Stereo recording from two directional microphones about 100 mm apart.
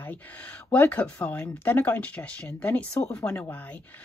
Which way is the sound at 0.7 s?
20° left (ahead or behind).